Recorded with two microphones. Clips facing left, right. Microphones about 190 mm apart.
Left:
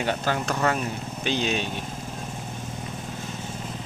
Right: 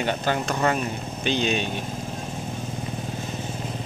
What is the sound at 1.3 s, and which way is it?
Speech, 5° left (ahead or behind).